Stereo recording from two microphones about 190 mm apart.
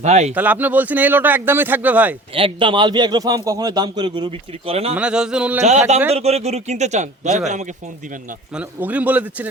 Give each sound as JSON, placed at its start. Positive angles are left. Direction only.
{"t": 0.0, "sound": "speech", "side_deg": -35}
{"t": 0.3, "sound": "speech", "side_deg": -10}
{"t": 2.3, "sound": "a man's voice", "side_deg": -25}
{"t": 4.9, "sound": "speech", "side_deg": -5}
{"t": 5.6, "sound": "speech", "side_deg": -35}
{"t": 8.5, "sound": "speech", "side_deg": -5}